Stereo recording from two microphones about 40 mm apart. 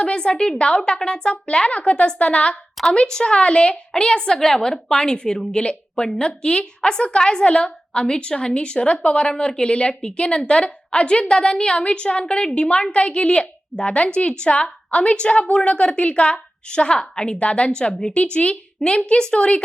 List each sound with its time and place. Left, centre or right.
0.0 s a woman's voice: left
4.4 s a woman's voice: centre; by 19.6 s left